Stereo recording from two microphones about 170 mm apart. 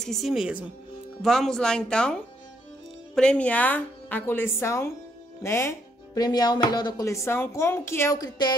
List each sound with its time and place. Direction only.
0.0 s speech: centre (ahead or behind); by 8.5 s 25° left (ahead or behind)